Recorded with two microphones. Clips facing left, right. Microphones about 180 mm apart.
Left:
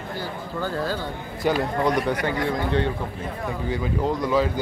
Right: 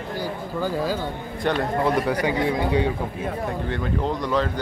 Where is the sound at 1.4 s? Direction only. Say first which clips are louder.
Even; 5° left (ahead or behind).